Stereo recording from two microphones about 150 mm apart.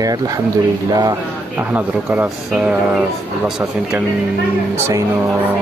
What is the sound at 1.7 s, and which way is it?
Speech, 10° right (ahead or behind).